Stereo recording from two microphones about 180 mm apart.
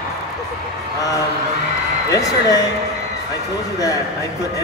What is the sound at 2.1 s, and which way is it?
Speech, 20° left (ahead or behind).